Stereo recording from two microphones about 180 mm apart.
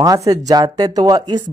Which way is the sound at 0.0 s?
20° right (ahead or behind).